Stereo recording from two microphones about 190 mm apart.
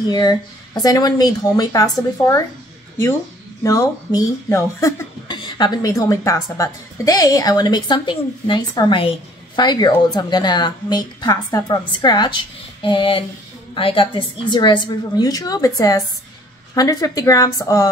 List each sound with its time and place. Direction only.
0.1 s a woman's voice: 20° left (ahead or behind)
3.6 s a woman's voice: 20° left (ahead or behind)